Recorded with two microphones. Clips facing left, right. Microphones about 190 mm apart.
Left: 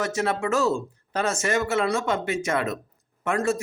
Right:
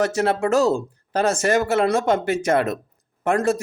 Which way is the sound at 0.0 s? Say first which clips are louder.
Right 5 dB; 35° right (ahead or behind).